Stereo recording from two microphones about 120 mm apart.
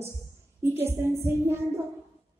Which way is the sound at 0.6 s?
20° right (ahead or behind).